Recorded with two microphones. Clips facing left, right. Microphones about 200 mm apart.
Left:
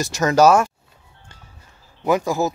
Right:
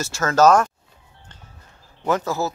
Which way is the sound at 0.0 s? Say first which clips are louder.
Left 2 dB; 15° left (ahead or behind).